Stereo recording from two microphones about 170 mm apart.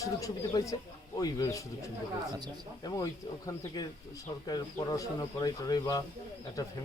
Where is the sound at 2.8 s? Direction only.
20° left (ahead or behind).